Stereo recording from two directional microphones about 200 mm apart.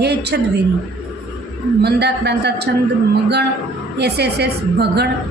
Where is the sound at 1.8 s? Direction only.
55° right (ahead or behind).